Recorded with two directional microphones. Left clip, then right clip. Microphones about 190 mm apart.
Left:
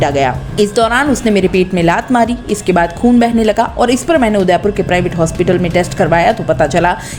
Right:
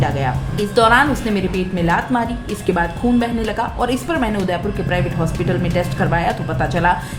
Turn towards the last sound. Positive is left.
turn(degrees=35)  # may be behind; listen again after turning